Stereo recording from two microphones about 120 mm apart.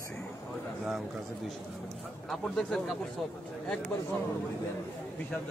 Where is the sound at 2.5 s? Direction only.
Centre (ahead or behind).